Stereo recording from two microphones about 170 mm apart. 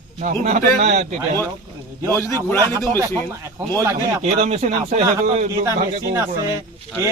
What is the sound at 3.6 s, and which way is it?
Speech, 15° right (ahead or behind).